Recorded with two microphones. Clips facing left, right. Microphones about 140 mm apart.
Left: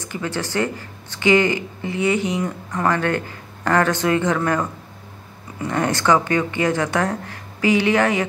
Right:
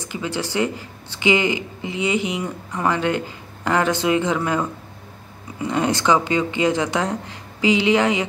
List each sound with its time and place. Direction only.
0.1 s speech: 15° right (ahead or behind)